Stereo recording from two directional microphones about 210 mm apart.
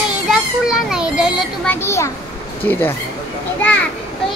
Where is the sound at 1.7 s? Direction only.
15° left (ahead or behind).